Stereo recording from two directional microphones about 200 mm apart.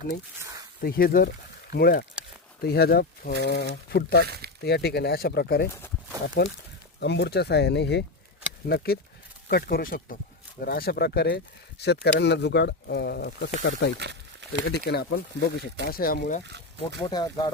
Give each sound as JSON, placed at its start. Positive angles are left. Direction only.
{"t": 0.8, "sound": "speech", "side_deg": 45}
{"t": 4.3, "sound": "speech", "side_deg": -50}
{"t": 4.6, "sound": "speech", "side_deg": 55}
{"t": 6.2, "sound": "speech", "side_deg": 65}
{"t": 14.7, "sound": "speech", "side_deg": 55}
{"t": 16.4, "sound": "speech", "side_deg": -60}
{"t": 17.0, "sound": "speech", "side_deg": 20}